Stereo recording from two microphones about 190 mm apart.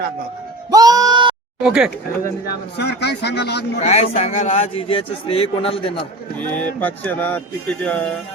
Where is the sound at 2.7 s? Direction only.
60° left (ahead or behind).